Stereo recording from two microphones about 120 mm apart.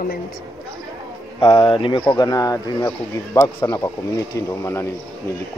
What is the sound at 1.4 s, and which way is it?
Speech, 50° left (ahead or behind).